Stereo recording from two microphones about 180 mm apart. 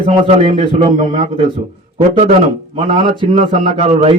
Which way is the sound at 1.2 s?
30° right (ahead or behind).